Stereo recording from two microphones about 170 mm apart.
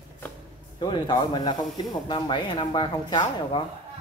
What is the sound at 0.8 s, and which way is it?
Speech, 25° left (ahead or behind).